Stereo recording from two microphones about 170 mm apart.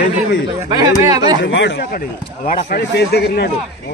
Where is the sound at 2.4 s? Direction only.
70° left (ahead or behind).